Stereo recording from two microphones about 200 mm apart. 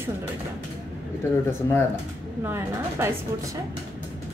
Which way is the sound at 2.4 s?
10° right (ahead or behind).